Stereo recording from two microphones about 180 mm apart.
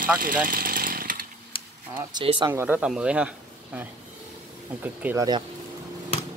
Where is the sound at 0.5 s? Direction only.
50° right (ahead or behind).